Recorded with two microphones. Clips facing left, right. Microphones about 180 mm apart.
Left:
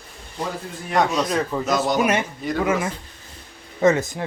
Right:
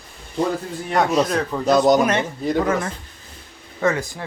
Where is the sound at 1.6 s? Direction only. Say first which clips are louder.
Right 10 dB; 40° right (ahead or behind).